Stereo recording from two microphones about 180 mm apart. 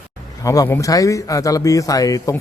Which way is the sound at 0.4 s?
20° left (ahead or behind).